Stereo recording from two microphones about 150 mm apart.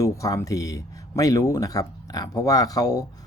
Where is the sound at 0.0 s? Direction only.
20° left (ahead or behind).